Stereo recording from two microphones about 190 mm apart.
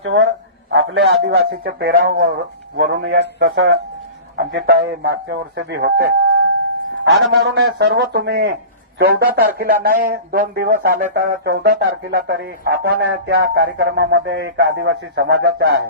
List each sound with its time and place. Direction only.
0.0 s a man's voice: 90° right
1.6 s speech: 50° right (ahead or behind)
2.7 s speech: 65° right (ahead or behind)
7.0 s a man's voice: 80° right
7.5 s speech: 60° right (ahead or behind)